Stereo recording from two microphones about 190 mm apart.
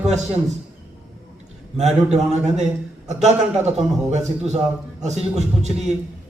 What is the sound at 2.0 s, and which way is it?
A man's voice, 35° right (ahead or behind).